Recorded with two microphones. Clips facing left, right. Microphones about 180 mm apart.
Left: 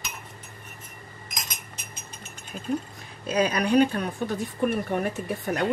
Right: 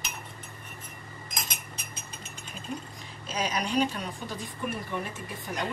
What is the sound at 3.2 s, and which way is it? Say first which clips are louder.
A woman's voice: left 7 dB; 60° left (ahead or behind).